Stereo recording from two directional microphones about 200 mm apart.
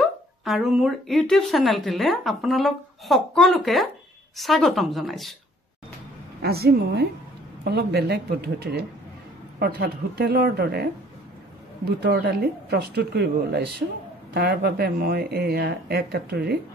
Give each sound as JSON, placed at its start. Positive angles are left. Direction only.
{"t": 0.0, "sound": "speech", "side_deg": 0}
{"t": 6.4, "sound": "speech", "side_deg": -50}